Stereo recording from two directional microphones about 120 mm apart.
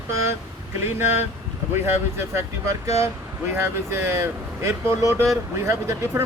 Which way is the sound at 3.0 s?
20° right (ahead or behind).